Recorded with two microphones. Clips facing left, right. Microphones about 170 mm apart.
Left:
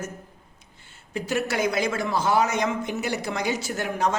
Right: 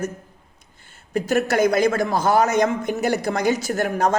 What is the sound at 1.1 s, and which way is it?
A man's voice, 45° right (ahead or behind).